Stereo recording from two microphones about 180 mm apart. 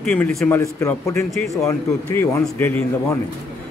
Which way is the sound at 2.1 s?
15° left (ahead or behind).